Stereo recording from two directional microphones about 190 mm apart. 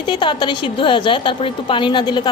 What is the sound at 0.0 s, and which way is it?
A woman's voice, 25° left (ahead or behind).